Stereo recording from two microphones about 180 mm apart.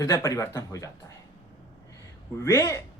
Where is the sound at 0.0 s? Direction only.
20° left (ahead or behind).